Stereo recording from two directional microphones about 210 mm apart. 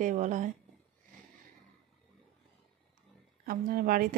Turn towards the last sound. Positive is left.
turn(degrees=-45)  # may be behind; listen again after turning